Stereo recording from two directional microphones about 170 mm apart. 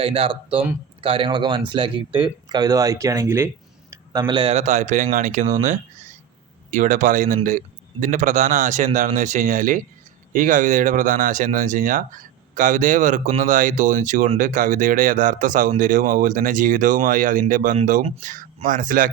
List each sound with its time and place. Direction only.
0.0 s a man's voice: 35° right (ahead or behind); by 3.5 s 15° right (ahead or behind)
4.1 s a man's voice: 30° right (ahead or behind); by 5.5 s 50° right (ahead or behind)
6.7 s speech: 50° right (ahead or behind)